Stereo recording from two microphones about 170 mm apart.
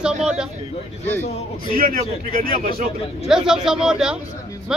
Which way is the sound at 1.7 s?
55° right (ahead or behind).